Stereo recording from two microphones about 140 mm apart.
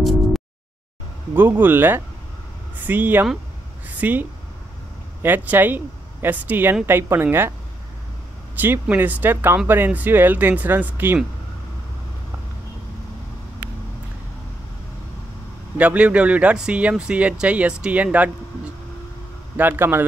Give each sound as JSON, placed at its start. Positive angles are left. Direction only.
{"t": 1.3, "sound": "a woman's voice", "side_deg": -15}
{"t": 8.5, "sound": "speech", "side_deg": -15}
{"t": 15.8, "sound": "speech", "side_deg": -10}
{"t": 19.5, "sound": "speech", "side_deg": -15}